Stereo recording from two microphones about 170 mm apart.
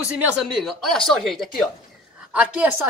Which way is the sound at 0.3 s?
5° right (ahead or behind).